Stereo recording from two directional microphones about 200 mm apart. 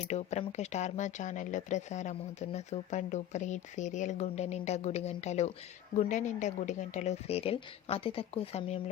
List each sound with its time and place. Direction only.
0.1 s speech: 35° left (ahead or behind)